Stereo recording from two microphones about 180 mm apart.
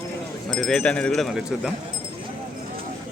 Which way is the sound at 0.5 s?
5° left (ahead or behind).